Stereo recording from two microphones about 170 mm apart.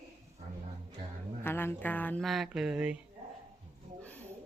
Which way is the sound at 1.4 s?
15° left (ahead or behind).